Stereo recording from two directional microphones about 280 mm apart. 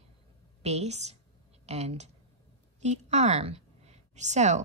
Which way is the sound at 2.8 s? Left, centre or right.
Right.